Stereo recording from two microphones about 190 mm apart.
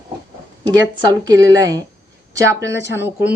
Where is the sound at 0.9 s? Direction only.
20° right (ahead or behind).